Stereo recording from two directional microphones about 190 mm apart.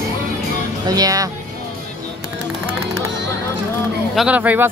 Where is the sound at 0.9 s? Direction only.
20° right (ahead or behind).